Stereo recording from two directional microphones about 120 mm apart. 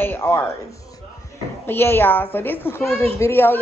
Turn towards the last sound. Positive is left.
turn(degrees=20)  # may be behind; listen again after turning